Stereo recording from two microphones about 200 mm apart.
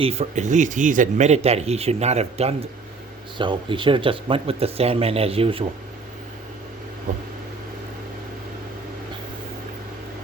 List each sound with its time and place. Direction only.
0.0 s speech: 30° right (ahead or behind)
7.1 s speech: 40° right (ahead or behind)